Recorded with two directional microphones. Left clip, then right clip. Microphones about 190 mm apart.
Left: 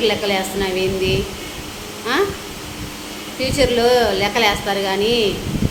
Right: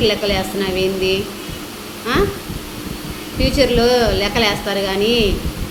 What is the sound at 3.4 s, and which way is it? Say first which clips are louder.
A woman's voice: right 1 dB; 10° right (ahead or behind).